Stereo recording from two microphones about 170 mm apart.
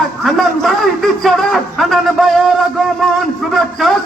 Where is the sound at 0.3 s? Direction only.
Centre (ahead or behind).